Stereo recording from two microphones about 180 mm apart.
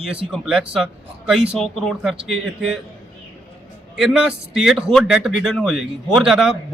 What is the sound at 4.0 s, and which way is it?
Speech, 5° right (ahead or behind).